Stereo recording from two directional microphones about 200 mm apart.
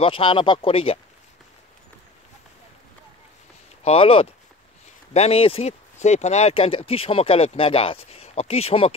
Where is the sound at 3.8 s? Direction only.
30° left (ahead or behind).